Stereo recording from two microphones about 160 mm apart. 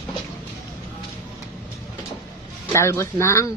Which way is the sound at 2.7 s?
15° left (ahead or behind).